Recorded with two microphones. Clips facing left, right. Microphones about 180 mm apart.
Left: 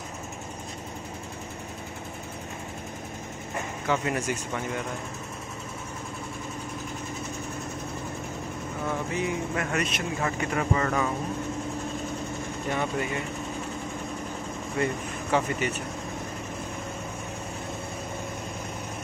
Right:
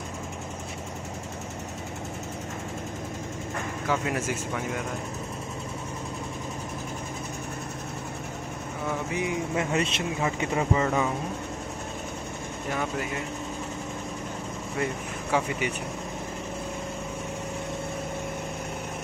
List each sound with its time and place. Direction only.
3.8 s speech: centre (ahead or behind)
9.1 s speech: 15° right (ahead or behind)
15.3 s speech: 10° right (ahead or behind)